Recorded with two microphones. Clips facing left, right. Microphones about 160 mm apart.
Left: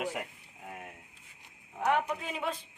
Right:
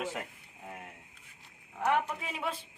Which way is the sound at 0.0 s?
15° left (ahead or behind).